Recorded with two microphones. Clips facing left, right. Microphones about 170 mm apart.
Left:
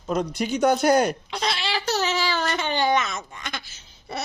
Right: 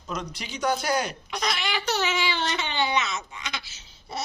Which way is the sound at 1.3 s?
30° left (ahead or behind).